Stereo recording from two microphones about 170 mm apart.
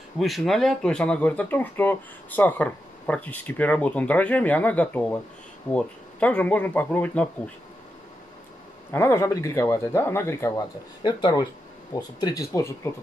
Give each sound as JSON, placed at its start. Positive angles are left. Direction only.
{"t": 0.2, "sound": "speech", "side_deg": 0}
{"t": 8.9, "sound": "speech", "side_deg": 15}
{"t": 11.0, "sound": "speech", "side_deg": 25}